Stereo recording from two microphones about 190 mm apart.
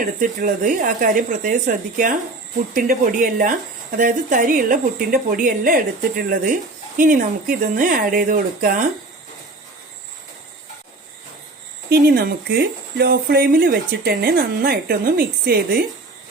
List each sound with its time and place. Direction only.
0.0 s speech: 45° right (ahead or behind)
11.9 s speech: 55° right (ahead or behind)